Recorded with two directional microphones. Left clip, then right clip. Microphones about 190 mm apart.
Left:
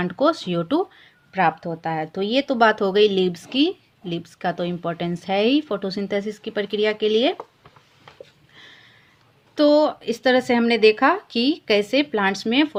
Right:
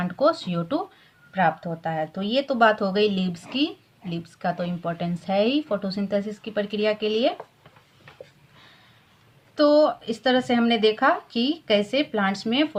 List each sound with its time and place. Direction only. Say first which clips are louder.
0.0 s speech: left 1 dB; 35° left (ahead or behind)
9.6 s speech: left 1 dB; 40° left (ahead or behind)